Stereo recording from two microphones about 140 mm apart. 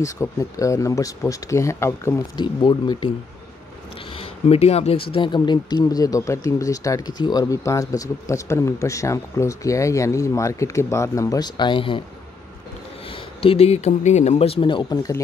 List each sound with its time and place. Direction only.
0.0 s speech: 25° left (ahead or behind)
2.3 s speech: 35° left (ahead or behind)
4.2 s speech: 45° left (ahead or behind)
5.1 s speech: 35° left (ahead or behind)
13.1 s speech: 40° left (ahead or behind); by 15.2 s 25° left (ahead or behind)